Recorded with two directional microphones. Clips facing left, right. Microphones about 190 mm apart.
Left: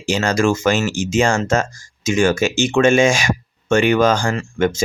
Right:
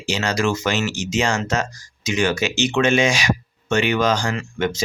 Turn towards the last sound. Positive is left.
turn(degrees=50)  # may be behind; listen again after turning